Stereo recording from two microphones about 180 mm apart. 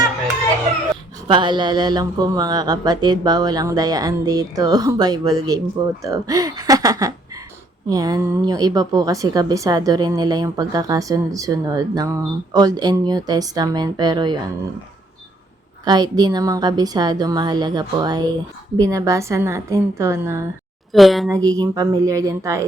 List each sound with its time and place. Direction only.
1.3 s speech: 25° right (ahead or behind)
15.8 s a woman's voice: 20° right (ahead or behind)
20.9 s a woman's voice: centre (ahead or behind)
21.4 s speech: 20° right (ahead or behind)